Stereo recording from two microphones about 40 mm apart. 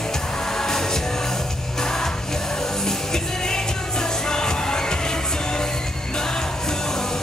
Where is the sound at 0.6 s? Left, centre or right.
Centre.